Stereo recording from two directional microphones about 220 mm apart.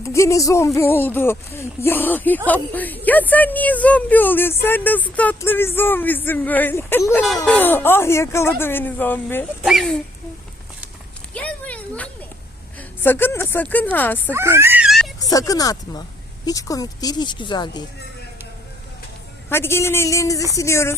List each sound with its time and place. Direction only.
0.0 s a woman's voice: 15° left (ahead or behind)
11.3 s a sound: 5° left (ahead or behind)
13.0 s a woman's voice: 10° left (ahead or behind)
14.3 s speech: 10° right (ahead or behind)
15.2 s a woman's voice: 15° left (ahead or behind)
19.5 s a woman's voice: 10° left (ahead or behind)